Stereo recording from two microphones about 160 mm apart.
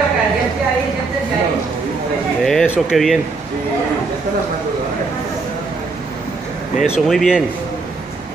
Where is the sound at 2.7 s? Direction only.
Centre (ahead or behind).